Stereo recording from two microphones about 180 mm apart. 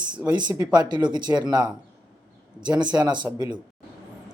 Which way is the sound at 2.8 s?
25° right (ahead or behind).